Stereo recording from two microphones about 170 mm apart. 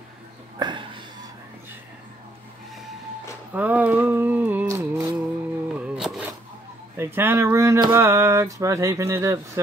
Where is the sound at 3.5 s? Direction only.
10° right (ahead or behind).